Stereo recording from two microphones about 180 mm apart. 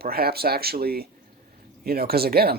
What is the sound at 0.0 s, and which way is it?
Speech, 60° right (ahead or behind).